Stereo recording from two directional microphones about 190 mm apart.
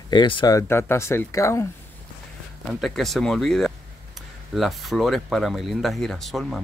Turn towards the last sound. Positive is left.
turn(degrees=0)  # may be behind; listen again after turning